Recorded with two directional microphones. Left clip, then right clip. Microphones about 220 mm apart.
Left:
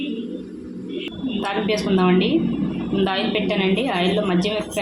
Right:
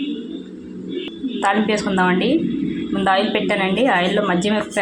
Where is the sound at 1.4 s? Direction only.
15° right (ahead or behind).